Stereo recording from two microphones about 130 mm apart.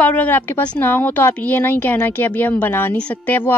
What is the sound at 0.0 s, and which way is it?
Speech, 10° left (ahead or behind).